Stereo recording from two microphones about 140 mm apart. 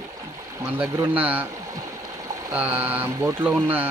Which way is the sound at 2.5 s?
10° right (ahead or behind).